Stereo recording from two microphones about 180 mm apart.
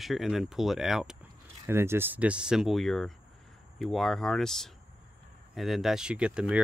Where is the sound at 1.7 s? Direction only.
15° right (ahead or behind).